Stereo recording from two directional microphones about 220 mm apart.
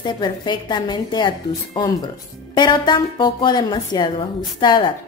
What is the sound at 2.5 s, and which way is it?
A woman's voice, 20° left (ahead or behind).